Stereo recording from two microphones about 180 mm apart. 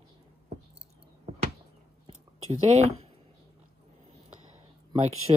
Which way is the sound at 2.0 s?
35° right (ahead or behind).